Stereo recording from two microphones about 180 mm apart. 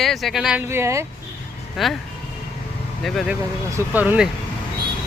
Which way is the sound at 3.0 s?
Centre (ahead or behind).